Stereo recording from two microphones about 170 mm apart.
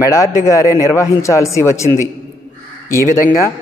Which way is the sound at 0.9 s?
15° left (ahead or behind).